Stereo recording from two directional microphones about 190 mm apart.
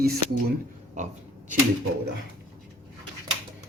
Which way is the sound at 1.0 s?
40° right (ahead or behind).